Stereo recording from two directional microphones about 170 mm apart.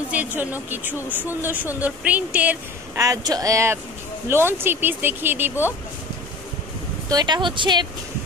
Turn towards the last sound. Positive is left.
turn(degrees=-25)  # may be behind; listen again after turning